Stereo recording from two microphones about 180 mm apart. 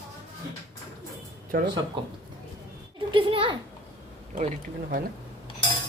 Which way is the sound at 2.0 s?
25° right (ahead or behind).